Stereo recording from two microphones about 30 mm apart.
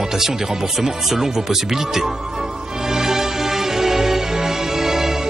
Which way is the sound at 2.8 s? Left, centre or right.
Centre.